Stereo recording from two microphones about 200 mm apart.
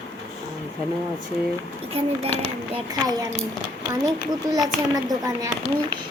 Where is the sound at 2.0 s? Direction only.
30° right (ahead or behind).